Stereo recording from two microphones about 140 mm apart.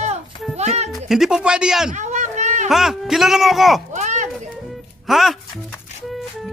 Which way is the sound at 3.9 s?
60° right (ahead or behind).